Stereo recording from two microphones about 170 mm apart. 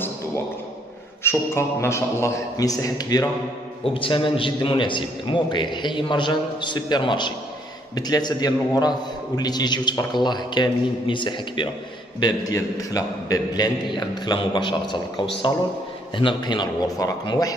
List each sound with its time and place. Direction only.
1.2 s a man's voice: 15° left (ahead or behind)
16.2 s a man's voice: 30° left (ahead or behind)